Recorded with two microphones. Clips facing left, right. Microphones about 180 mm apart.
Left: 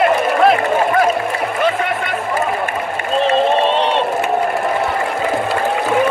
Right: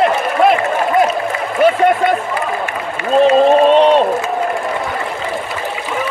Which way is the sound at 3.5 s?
45° right (ahead or behind).